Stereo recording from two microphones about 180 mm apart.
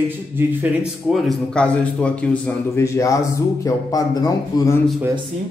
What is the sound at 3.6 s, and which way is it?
Speech, 20° left (ahead or behind).